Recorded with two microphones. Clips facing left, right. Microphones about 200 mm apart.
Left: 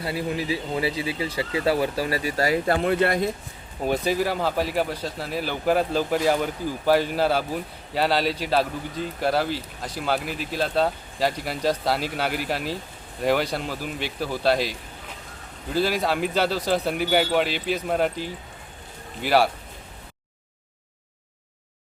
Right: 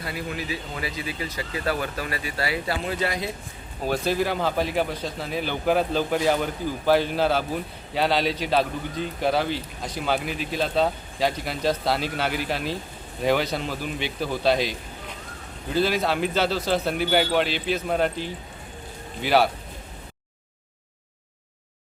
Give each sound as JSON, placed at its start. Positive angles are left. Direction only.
{"t": 0.0, "sound": "speech", "side_deg": 30}
{"t": 3.8, "sound": "speech", "side_deg": 15}